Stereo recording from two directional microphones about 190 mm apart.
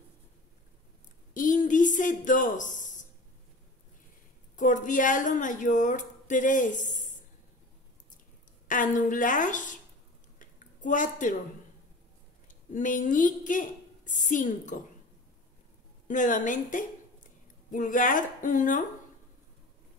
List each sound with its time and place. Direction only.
1.3 s a sound: 45° left (ahead or behind)
4.6 s a woman's voice: 40° left (ahead or behind)
8.6 s a woman's voice: 45° left (ahead or behind)
10.4 s a sound: 45° left (ahead or behind)
12.4 s a woman's voice: 45° left (ahead or behind)
16.1 s a woman's voice: 40° left (ahead or behind)